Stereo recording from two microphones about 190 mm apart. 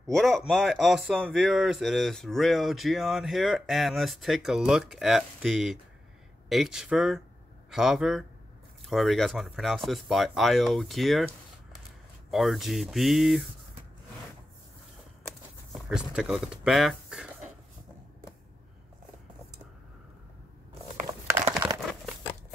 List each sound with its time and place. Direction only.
0.0 s speech: centre (ahead or behind)
15.7 s speech: 5° right (ahead or behind)